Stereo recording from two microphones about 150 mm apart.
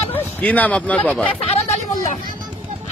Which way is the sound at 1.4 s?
40° left (ahead or behind).